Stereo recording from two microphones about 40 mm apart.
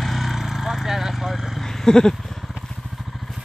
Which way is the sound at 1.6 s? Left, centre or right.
Centre.